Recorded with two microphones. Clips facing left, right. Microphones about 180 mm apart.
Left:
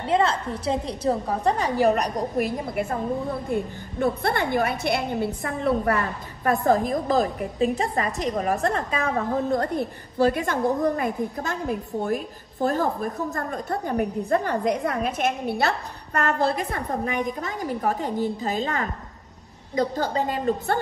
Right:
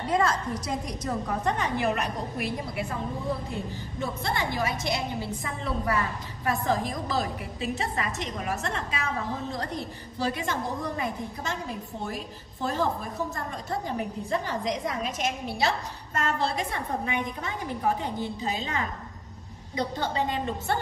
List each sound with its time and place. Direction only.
0.0 s a woman's voice: 25° left (ahead or behind); by 16.3 s 60° left (ahead or behind)
16.7 s a woman's voice: 40° left (ahead or behind)